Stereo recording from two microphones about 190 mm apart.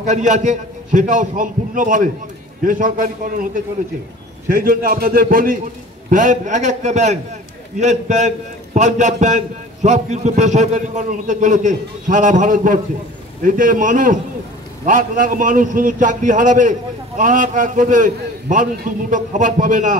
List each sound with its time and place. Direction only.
0.0 s a man's voice: 40° right (ahead or behind)